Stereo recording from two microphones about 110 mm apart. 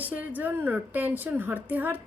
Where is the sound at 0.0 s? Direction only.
15° right (ahead or behind).